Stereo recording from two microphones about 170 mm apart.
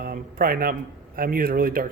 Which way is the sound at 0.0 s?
60° right (ahead or behind).